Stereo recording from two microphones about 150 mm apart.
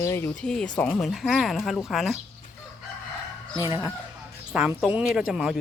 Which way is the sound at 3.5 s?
20° right (ahead or behind).